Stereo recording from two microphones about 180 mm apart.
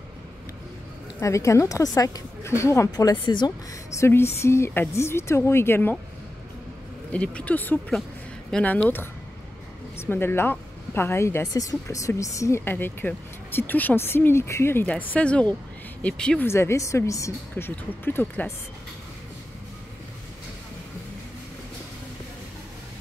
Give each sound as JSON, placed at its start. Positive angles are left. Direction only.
{"t": 1.2, "sound": "a woman's voice", "side_deg": 15}
{"t": 7.1, "sound": "a woman's voice", "side_deg": 5}